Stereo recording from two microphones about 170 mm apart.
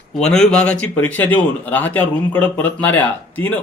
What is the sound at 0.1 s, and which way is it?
Speech, 5° left (ahead or behind).